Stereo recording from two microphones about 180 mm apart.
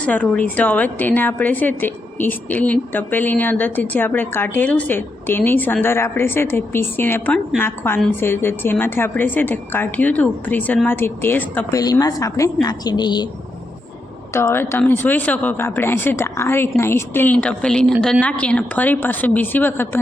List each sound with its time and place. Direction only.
0.0 s a woman's voice: 10° left (ahead or behind); by 13.2 s 25° left (ahead or behind)
14.3 s a woman's voice: 15° left (ahead or behind)